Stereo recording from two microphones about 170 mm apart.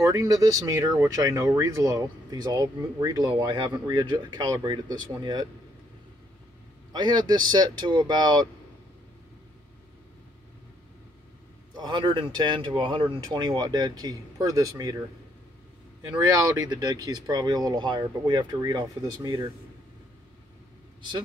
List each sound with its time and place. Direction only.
0.0 s speech: 20° right (ahead or behind)
6.9 s speech: 25° right (ahead or behind)
11.7 s speech: 25° right (ahead or behind)
16.1 s speech: 20° right (ahead or behind)